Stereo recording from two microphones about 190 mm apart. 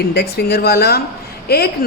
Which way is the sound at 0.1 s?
60° left (ahead or behind).